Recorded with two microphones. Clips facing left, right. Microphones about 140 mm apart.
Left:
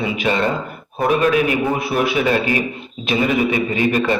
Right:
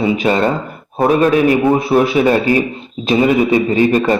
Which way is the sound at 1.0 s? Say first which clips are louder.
Right 4 dB; 35° right (ahead or behind).